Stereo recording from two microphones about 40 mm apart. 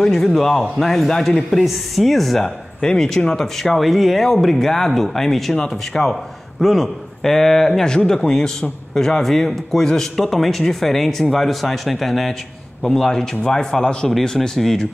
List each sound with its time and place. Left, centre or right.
0.0 s speech: centre
3.8 s speech: centre
8.1 s speech: centre
12.9 s speech: centre